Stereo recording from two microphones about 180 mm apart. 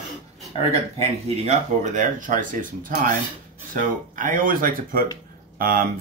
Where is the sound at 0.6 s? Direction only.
35° right (ahead or behind).